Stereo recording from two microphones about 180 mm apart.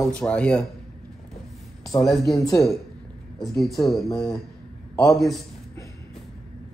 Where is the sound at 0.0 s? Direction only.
5° left (ahead or behind).